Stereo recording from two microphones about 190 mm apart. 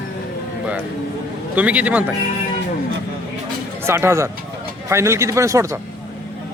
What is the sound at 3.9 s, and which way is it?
Speech, 15° right (ahead or behind).